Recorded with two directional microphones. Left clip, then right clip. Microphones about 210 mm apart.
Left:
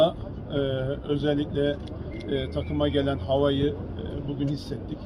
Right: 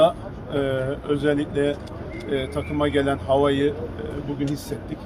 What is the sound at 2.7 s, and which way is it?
Speech, 15° right (ahead or behind).